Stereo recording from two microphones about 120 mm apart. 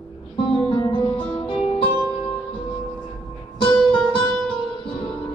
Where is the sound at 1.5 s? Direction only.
50° left (ahead or behind).